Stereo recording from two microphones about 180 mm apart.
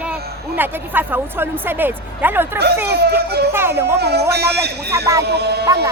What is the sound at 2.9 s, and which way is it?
Speech, 65° right (ahead or behind).